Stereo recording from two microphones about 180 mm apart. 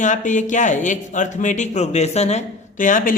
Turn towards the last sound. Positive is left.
turn(degrees=50)  # may be behind; listen again after turning